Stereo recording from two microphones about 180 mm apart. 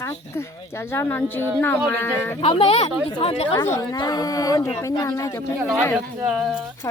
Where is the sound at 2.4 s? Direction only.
30° left (ahead or behind).